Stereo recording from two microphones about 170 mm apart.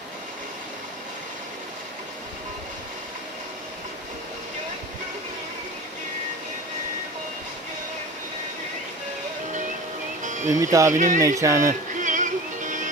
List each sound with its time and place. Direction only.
10.2 s music: 45° right (ahead or behind)
10.6 s speech: 20° right (ahead or behind)
10.9 s speech: 50° right (ahead or behind)
11.1 s speech: 20° right (ahead or behind)
11.9 s music: 50° right (ahead or behind)